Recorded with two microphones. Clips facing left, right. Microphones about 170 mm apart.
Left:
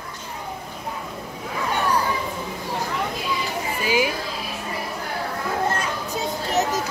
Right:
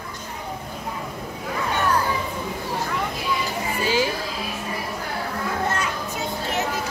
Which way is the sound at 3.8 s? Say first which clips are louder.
Left 1 dB; 15° left (ahead or behind).